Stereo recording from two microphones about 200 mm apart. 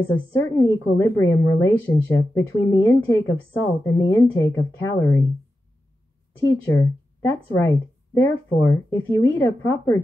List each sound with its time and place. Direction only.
0.1 s a woman's voice: 10° left (ahead or behind)
6.6 s a woman's voice: 15° left (ahead or behind)